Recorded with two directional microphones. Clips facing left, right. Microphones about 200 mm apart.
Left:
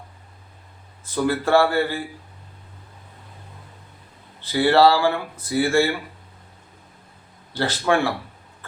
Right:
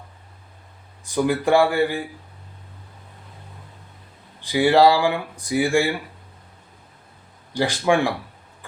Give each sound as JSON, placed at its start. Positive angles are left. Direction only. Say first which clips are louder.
{"t": 1.0, "sound": "speech", "louder": "right 2 dB", "side_deg": -15}
{"t": 4.4, "sound": "speech", "louder": "right 1 dB", "side_deg": -15}
{"t": 7.5, "sound": "speech", "louder": "right 1 dB", "side_deg": -15}